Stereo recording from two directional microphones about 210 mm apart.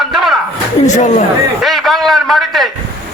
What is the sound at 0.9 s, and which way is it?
Speech, 35° left (ahead or behind).